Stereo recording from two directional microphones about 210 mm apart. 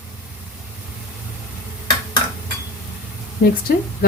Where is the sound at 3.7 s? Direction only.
45° left (ahead or behind).